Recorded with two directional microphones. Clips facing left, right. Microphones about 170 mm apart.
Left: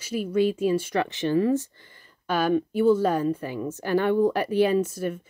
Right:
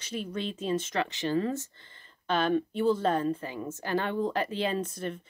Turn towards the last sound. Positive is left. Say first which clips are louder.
# left 8 dB
turn(degrees=10)  # may be behind; listen again after turning